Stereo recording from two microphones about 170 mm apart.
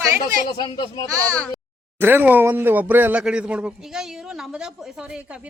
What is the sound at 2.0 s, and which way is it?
A woman's voice, 10° right (ahead or behind).